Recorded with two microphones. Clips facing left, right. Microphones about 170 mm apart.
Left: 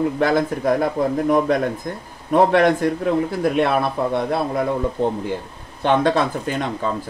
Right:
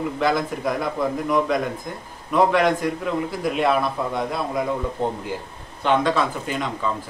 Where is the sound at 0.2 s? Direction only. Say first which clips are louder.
Even; 50° left (ahead or behind).